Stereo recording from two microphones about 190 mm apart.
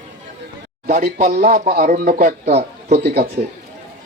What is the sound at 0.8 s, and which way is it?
Speech, 50° right (ahead or behind).